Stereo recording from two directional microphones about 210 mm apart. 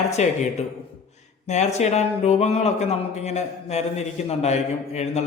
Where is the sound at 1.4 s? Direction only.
35° left (ahead or behind).